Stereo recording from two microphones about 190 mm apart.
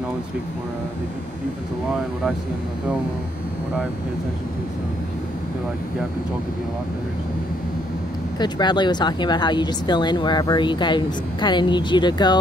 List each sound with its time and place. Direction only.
8.4 s speech: 20° left (ahead or behind)